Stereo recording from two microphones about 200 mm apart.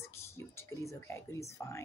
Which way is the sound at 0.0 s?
15° left (ahead or behind).